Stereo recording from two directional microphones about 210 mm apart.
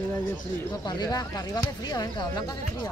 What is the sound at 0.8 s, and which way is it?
Speech, 20° left (ahead or behind).